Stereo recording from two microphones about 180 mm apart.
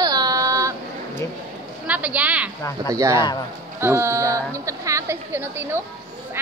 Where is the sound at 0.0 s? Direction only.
20° right (ahead or behind).